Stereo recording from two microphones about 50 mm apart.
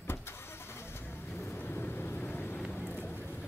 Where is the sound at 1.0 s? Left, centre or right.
Left.